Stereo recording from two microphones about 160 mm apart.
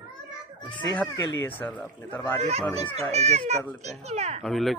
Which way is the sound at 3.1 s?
45° right (ahead or behind).